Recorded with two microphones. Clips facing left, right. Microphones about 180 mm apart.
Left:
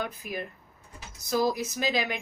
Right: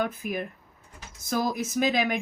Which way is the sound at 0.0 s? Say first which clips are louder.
Right 5 dB; 50° right (ahead or behind).